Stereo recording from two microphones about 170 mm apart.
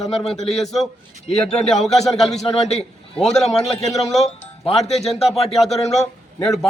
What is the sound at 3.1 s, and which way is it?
Speech, 5° left (ahead or behind).